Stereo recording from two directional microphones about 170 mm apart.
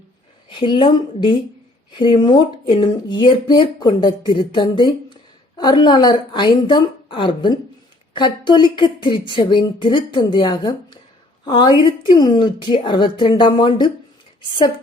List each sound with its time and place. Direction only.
0.5 s speech: 30° left (ahead or behind)